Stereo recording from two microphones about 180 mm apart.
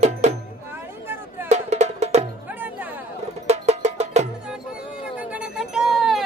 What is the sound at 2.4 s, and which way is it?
Music, 10° right (ahead or behind).